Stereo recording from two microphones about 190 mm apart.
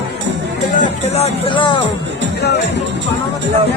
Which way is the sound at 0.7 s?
40° left (ahead or behind).